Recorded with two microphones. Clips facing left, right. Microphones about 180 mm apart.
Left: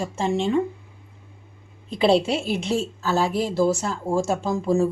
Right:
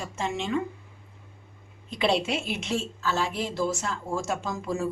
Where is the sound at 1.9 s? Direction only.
35° left (ahead or behind).